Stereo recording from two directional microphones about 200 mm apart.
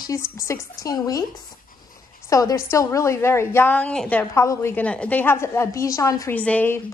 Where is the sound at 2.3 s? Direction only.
15° left (ahead or behind).